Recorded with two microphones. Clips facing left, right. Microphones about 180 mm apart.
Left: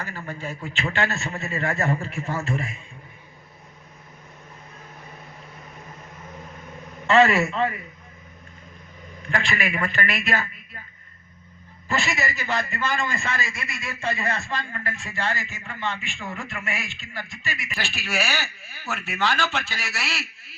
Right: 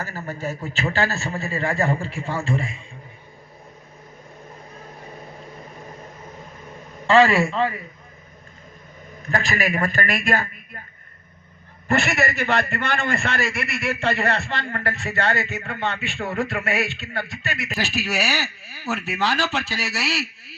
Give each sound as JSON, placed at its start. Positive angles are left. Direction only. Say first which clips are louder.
{"t": 0.0, "sound": "speech", "louder": "right 4 dB", "side_deg": -40}
{"t": 7.1, "sound": "speech", "louder": "right 2 dB", "side_deg": -30}
{"t": 9.3, "sound": "a man's voice", "louder": "right 3 dB", "side_deg": -40}
{"t": 11.9, "sound": "a man's voice", "louder": "right 5 dB", "side_deg": -60}
{"t": 17.7, "sound": "speech", "louder": "right 3 dB", "side_deg": -40}